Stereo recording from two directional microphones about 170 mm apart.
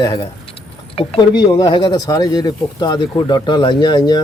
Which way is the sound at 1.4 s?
25° left (ahead or behind).